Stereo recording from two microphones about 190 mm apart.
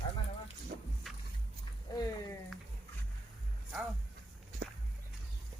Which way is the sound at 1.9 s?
20° left (ahead or behind).